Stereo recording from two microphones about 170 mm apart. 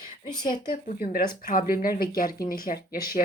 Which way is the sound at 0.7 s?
50° left (ahead or behind).